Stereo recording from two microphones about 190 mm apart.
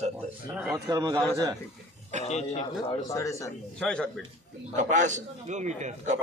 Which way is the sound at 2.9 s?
15° left (ahead or behind).